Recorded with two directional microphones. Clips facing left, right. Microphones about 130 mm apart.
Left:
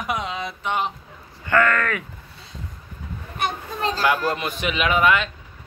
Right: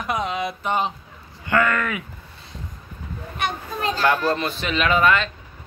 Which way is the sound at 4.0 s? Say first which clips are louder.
Right 2 dB; 10° left (ahead or behind).